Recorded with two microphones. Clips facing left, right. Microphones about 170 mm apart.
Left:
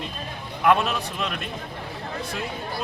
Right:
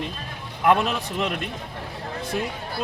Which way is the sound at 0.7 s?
20° right (ahead or behind).